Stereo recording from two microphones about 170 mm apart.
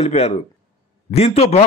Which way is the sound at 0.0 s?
40° left (ahead or behind).